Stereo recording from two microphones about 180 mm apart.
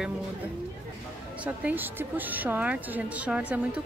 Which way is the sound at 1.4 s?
10° right (ahead or behind).